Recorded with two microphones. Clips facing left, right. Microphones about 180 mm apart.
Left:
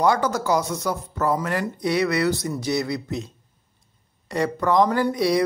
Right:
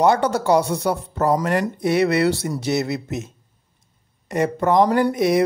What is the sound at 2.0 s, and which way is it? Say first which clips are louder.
Speech: right 3 dB; 25° right (ahead or behind).